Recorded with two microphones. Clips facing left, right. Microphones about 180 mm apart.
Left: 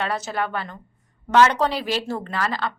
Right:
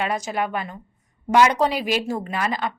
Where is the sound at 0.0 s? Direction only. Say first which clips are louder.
Right 1 dB; 15° right (ahead or behind).